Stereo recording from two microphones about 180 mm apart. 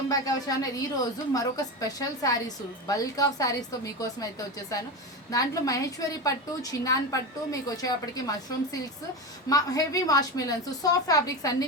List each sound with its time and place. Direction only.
0.1 s a woman's voice: 20° left (ahead or behind)